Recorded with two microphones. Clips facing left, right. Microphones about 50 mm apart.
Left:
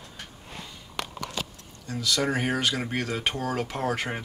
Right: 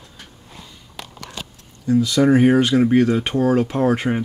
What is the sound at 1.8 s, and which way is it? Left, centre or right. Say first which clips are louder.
Speech: right 11 dB; centre.